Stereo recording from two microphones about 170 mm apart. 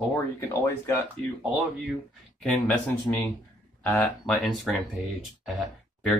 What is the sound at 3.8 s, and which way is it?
Speech, 5° left (ahead or behind).